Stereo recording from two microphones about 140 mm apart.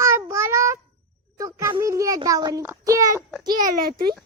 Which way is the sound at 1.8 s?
25° right (ahead or behind).